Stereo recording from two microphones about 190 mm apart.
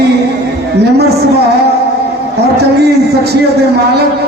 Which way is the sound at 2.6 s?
60° right (ahead or behind).